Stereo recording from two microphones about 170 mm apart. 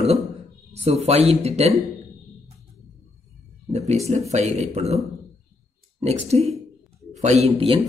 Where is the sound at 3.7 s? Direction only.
40° right (ahead or behind).